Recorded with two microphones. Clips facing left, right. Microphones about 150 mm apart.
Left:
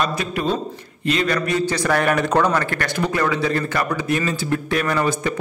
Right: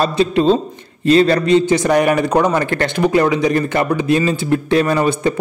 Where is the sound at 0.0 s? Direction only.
30° right (ahead or behind).